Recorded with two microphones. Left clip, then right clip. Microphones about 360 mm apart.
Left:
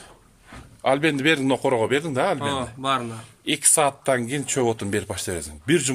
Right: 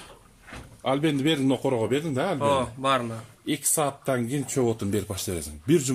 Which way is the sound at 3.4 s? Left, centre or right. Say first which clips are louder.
Left 6 dB; left.